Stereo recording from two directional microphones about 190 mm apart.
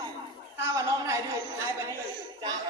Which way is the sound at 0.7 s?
15° right (ahead or behind).